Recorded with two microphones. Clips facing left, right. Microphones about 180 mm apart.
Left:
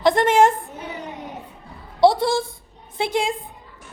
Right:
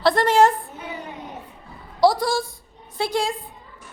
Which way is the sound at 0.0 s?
20° left (ahead or behind).